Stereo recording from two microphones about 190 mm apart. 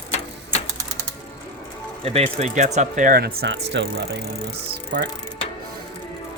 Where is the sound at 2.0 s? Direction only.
30° right (ahead or behind); by 4.0 s 70° right (ahead or behind).